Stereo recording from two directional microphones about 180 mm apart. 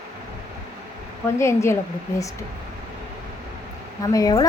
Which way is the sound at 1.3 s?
15° left (ahead or behind).